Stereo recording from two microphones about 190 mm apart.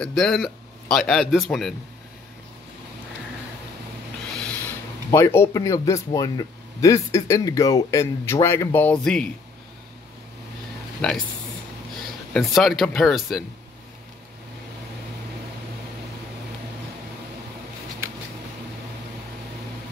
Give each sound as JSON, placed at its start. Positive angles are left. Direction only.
{"t": 0.0, "sound": "a man's voice", "side_deg": 0}
{"t": 4.4, "sound": "speech", "side_deg": 10}
{"t": 11.0, "sound": "a man's voice", "side_deg": 5}
{"t": 12.4, "sound": "a man's voice", "side_deg": 0}